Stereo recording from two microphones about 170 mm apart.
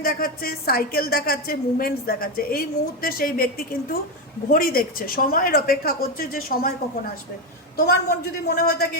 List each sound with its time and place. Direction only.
0.0 s a woman's voice: 60° left (ahead or behind)
7.8 s a woman's voice: 65° left (ahead or behind)